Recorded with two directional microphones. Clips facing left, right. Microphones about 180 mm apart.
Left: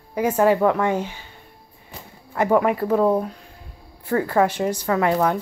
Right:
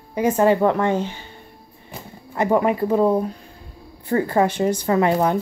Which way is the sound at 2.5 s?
20° right (ahead or behind).